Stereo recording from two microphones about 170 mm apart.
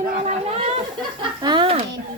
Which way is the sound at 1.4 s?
30° right (ahead or behind).